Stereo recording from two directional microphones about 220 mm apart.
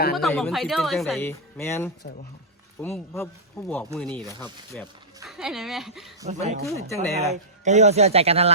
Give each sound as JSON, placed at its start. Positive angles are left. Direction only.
{"t": 0.2, "sound": "speech", "side_deg": 0}
{"t": 1.3, "sound": "speech", "side_deg": 10}
{"t": 6.2, "sound": "speech", "side_deg": -30}
{"t": 6.7, "sound": "speech", "side_deg": 15}
{"t": 7.6, "sound": "speech", "side_deg": -30}